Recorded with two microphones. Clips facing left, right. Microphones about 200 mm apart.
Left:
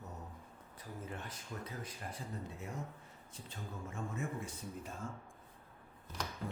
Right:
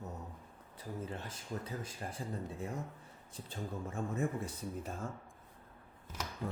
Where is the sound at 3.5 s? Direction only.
35° right (ahead or behind).